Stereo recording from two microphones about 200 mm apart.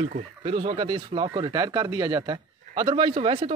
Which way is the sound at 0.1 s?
35° right (ahead or behind).